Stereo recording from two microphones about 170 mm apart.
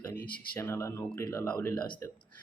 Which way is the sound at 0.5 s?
15° left (ahead or behind).